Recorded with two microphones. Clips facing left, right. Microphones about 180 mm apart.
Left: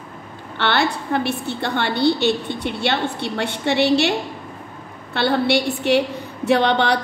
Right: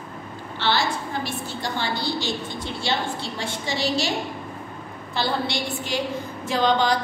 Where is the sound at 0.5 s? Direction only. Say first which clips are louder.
Left 4 dB; 65° left (ahead or behind).